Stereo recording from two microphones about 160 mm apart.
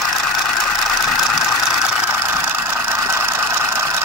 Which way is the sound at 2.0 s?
10° right (ahead or behind).